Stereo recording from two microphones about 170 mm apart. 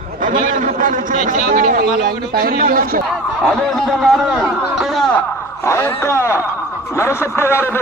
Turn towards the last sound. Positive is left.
turn(degrees=15)  # may be behind; listen again after turning